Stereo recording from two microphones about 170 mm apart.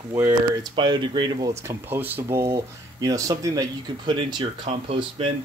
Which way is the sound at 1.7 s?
10° right (ahead or behind).